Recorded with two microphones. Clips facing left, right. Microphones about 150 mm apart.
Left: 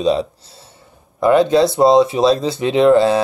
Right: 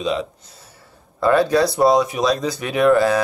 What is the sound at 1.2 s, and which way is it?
Speech, 20° left (ahead or behind).